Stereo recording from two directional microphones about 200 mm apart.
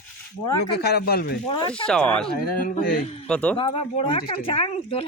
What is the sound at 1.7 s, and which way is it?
Speech, 5° left (ahead or behind).